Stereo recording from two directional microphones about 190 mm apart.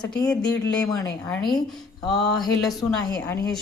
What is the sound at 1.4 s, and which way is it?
Speech, centre (ahead or behind).